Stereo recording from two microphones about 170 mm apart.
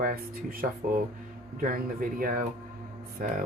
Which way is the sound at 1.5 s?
55° right (ahead or behind).